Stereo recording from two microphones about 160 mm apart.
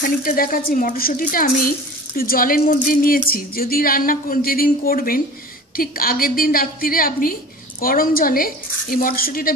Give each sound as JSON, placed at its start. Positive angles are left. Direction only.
{"t": 0.2, "sound": "speech", "side_deg": 65}